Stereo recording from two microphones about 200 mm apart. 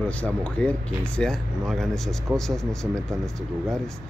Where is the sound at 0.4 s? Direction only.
5° left (ahead or behind).